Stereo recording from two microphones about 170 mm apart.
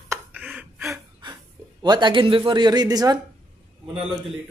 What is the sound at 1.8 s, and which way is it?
Speech, 25° right (ahead or behind).